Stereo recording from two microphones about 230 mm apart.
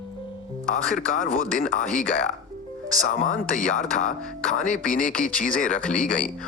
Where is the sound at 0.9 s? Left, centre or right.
Left.